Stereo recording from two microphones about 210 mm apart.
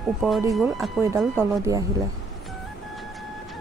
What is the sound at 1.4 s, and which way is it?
Speech, 15° right (ahead or behind).